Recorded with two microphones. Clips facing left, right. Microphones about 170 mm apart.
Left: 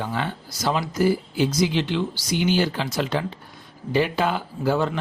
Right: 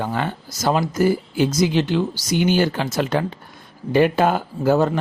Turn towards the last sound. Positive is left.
turn(degrees=-45)  # may be behind; listen again after turning